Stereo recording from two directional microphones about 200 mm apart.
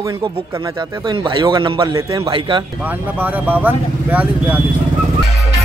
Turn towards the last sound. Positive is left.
turn(degrees=-10)  # may be behind; listen again after turning